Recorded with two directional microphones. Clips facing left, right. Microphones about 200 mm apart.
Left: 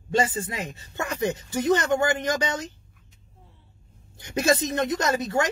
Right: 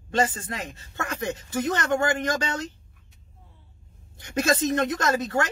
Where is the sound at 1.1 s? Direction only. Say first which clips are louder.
Left 2 dB; 20° left (ahead or behind).